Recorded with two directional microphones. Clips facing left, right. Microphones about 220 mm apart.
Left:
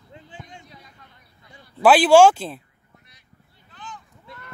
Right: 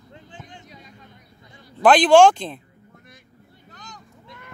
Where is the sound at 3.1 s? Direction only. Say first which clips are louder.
Right 9 dB; 45° right (ahead or behind).